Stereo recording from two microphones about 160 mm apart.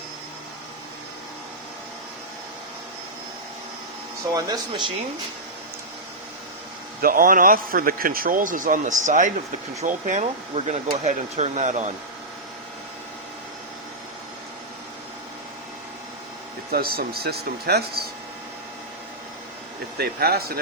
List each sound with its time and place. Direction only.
4.3 s speech: 25° right (ahead or behind)
7.0 s a man's voice: 60° right (ahead or behind)
16.7 s speech: 70° right (ahead or behind)
20.0 s speech: 75° right (ahead or behind)